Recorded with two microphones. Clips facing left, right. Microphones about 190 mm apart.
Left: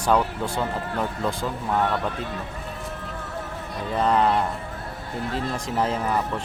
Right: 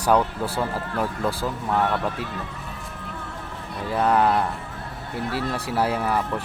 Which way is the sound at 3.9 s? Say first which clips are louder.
Right 1 dB; 10° right (ahead or behind).